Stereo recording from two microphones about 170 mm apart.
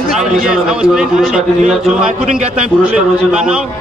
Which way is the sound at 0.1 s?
5° right (ahead or behind).